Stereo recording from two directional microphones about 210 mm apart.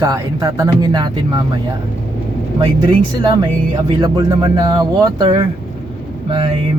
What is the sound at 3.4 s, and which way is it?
Speech, 20° right (ahead or behind).